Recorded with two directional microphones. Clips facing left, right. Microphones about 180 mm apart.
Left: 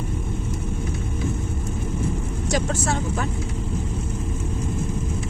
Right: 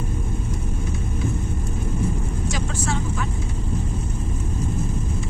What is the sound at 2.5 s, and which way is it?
Speech, 40° left (ahead or behind).